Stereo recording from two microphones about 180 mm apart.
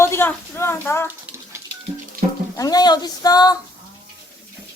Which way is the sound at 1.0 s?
10° right (ahead or behind).